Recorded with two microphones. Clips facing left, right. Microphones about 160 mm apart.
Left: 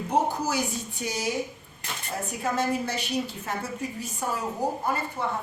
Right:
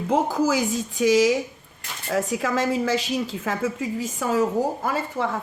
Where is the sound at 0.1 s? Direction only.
90° right.